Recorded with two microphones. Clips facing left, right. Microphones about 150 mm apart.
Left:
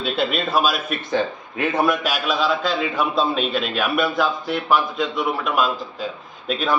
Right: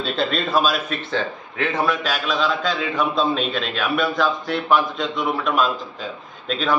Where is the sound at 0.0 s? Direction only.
10° left (ahead or behind).